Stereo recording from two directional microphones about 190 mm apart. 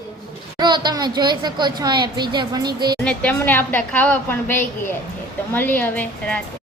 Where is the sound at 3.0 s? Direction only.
10° left (ahead or behind).